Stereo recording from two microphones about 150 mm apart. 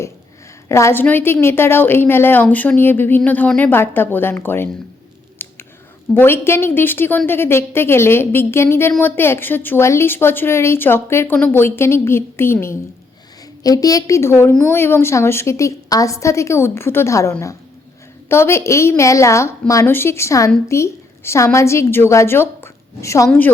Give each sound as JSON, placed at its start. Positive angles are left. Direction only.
{"t": 0.7, "sound": "a woman's voice", "side_deg": 20}
{"t": 5.4, "sound": "scissors", "side_deg": 15}
{"t": 6.1, "sound": "a woman's voice", "side_deg": 15}